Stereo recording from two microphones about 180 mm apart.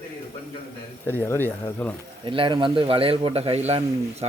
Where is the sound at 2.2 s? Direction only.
30° right (ahead or behind).